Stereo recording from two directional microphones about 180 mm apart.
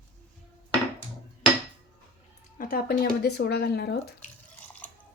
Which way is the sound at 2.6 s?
55° left (ahead or behind).